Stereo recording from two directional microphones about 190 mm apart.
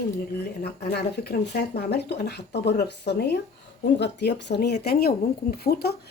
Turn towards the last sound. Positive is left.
turn(degrees=55)  # may be behind; listen again after turning